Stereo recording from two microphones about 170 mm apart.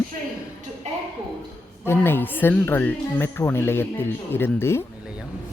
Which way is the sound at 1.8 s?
15° left (ahead or behind).